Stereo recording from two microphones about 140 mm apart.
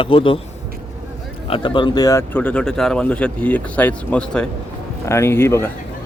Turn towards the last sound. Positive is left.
turn(degrees=20)  # may be behind; listen again after turning